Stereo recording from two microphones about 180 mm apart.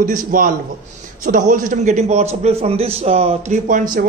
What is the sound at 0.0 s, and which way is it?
A man's voice, 50° right (ahead or behind).